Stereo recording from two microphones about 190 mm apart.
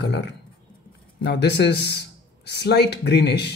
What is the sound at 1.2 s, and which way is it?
Speech, 65° left (ahead or behind).